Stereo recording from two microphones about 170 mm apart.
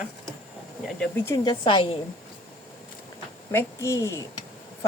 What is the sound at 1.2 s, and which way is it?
Speech, 20° left (ahead or behind).